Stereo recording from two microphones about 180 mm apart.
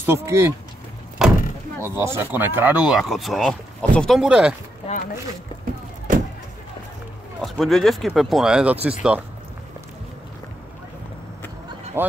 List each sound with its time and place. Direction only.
0.0 s speech: 15° right (ahead or behind)
1.2 s door: centre (ahead or behind)
1.8 s speech: 15° right (ahead or behind)
4.8 s speech: 30° left (ahead or behind)
7.4 s speech: centre (ahead or behind)
12.0 s speech: 10° right (ahead or behind)